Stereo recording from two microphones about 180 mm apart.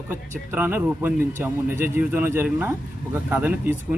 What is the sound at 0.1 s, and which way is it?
Speech, 10° right (ahead or behind).